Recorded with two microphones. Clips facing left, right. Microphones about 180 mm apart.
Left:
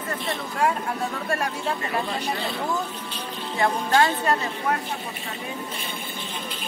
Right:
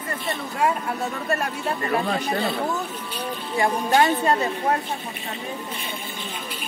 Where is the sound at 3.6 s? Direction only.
15° right (ahead or behind).